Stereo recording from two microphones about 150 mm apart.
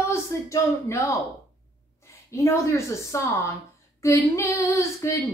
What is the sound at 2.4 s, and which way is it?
Female singing, 20° left (ahead or behind).